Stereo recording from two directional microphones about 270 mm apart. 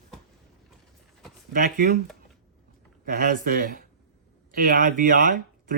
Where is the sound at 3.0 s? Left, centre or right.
Right.